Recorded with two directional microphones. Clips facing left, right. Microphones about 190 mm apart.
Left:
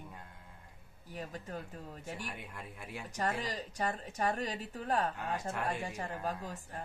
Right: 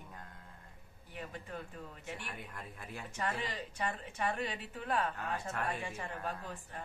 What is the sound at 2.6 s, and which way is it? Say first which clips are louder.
Speech: left 1 dB; 10° left (ahead or behind).